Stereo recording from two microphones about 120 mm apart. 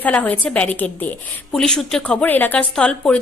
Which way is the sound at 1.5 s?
5° left (ahead or behind).